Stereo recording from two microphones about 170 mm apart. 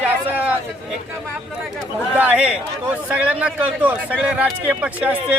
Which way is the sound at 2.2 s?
10° right (ahead or behind).